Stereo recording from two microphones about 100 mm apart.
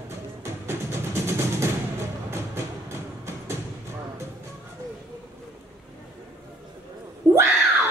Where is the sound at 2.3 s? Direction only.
25° right (ahead or behind).